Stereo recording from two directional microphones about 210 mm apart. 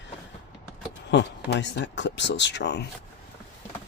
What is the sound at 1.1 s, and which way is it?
Speech, 55° left (ahead or behind).